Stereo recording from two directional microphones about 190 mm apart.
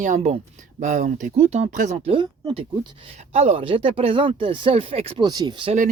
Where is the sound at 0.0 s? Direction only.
40° right (ahead or behind).